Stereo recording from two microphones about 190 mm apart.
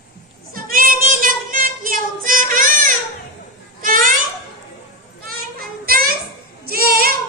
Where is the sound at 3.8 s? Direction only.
45° right (ahead or behind).